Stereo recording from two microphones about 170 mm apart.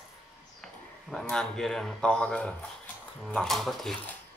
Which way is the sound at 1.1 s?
5° left (ahead or behind).